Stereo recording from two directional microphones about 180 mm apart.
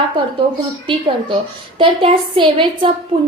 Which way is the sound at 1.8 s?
30° right (ahead or behind).